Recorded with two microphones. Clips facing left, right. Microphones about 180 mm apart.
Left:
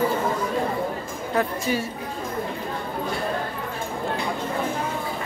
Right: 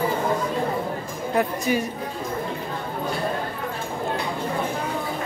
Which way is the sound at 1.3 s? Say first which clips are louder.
Right 2 dB; 15° right (ahead or behind).